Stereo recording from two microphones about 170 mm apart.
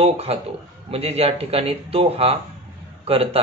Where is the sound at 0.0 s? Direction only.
35° right (ahead or behind).